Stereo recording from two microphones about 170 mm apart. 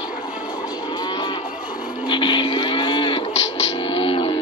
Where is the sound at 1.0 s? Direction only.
25° left (ahead or behind).